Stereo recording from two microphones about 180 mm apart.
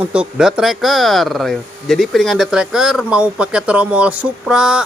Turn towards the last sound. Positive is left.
turn(degrees=-5)  # may be behind; listen again after turning